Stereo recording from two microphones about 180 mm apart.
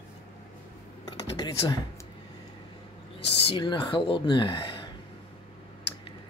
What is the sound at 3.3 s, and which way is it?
Speech, 30° left (ahead or behind).